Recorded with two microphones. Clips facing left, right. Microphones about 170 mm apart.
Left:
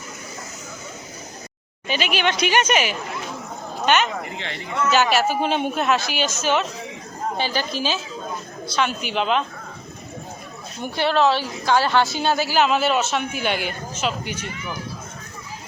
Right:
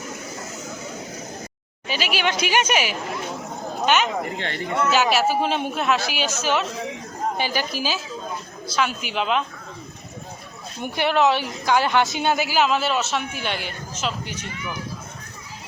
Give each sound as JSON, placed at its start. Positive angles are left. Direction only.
{"t": 1.9, "sound": "a woman's voice", "side_deg": -5}
{"t": 10.9, "sound": "a woman's voice", "side_deg": -15}
{"t": 12.5, "sound": "a man's voice", "side_deg": 0}